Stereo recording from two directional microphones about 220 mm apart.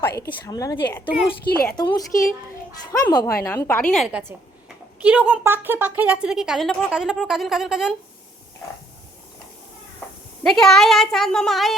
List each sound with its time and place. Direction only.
0.3 s a woman's voice: 15° left (ahead or behind)
1.5 s a woman's voice: 45° left (ahead or behind)
1.7 s a woman's voice: 15° left (ahead or behind)
3.1 s a woman's voice: 20° left (ahead or behind); by 7.9 s centre (ahead or behind)
10.4 s a woman's voice: centre (ahead or behind)